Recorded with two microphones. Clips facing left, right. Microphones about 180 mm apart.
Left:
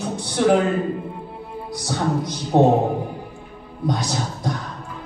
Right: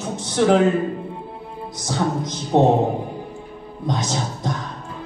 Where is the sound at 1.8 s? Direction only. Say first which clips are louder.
Even; 20° right (ahead or behind).